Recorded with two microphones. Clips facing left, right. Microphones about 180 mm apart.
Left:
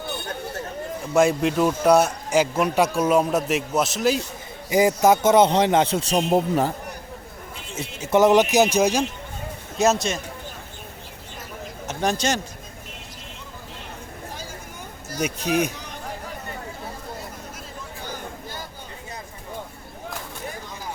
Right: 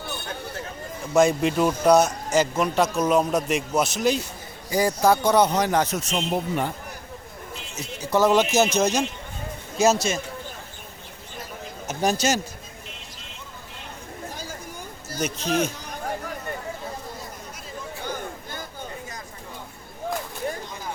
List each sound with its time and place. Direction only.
1.1 s a man's voice: 5° left (ahead or behind)
4.7 s a man's voice: 20° left (ahead or behind); by 6.7 s 40° left (ahead or behind)
7.8 s a man's voice: 25° left (ahead or behind)
9.7 s speech: centre (ahead or behind)
11.9 s speech: 5° right (ahead or behind)
15.2 s a man's voice: 15° left (ahead or behind)